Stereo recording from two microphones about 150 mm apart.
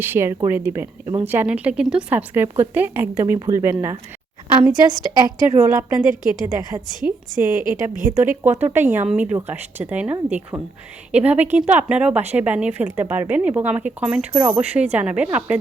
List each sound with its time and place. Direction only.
0.0 s a woman's voice: 15° right (ahead or behind)